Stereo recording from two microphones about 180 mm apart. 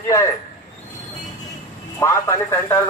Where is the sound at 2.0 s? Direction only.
15° left (ahead or behind).